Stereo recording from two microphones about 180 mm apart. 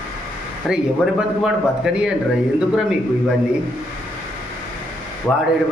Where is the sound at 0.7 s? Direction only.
5° right (ahead or behind).